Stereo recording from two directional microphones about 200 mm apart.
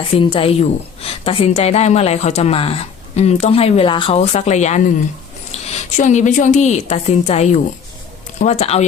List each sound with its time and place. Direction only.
0.2 s a woman's voice: 25° left (ahead or behind)